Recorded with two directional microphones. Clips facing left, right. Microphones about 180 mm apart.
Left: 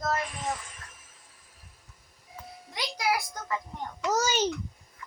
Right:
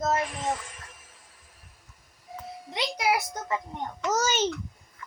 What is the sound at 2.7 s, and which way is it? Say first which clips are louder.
Speech: right 3 dB; 25° right (ahead or behind).